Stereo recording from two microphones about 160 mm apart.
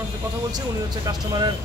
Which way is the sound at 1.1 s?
25° right (ahead or behind).